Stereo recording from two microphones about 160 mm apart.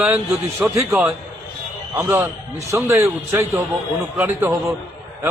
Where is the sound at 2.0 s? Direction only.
15° right (ahead or behind).